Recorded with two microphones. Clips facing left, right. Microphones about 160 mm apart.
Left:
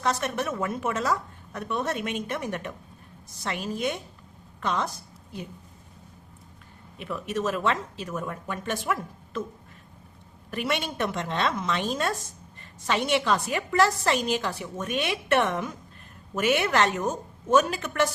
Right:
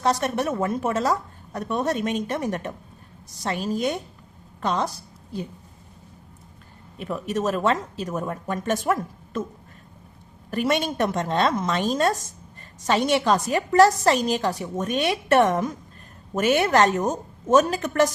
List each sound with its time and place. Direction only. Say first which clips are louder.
0.0 s a woman's voice: right 4 dB; 35° right (ahead or behind)
7.0 s a woman's voice: right 3 dB; 40° right (ahead or behind)
10.5 s a woman's voice: right 6 dB; 40° right (ahead or behind)